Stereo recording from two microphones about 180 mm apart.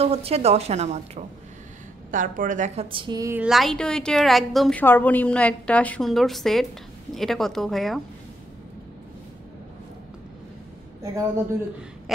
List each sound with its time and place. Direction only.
0.0 s a woman's voice: 35° right (ahead or behind); by 3.4 s 15° right (ahead or behind)
3.4 s a woman's voice: centre (ahead or behind)